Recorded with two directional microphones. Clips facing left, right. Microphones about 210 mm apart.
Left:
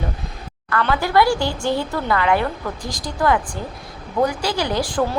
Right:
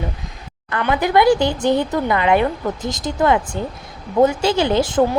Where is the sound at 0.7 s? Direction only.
20° right (ahead or behind).